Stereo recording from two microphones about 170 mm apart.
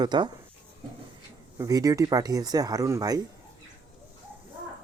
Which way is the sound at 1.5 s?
20° right (ahead or behind).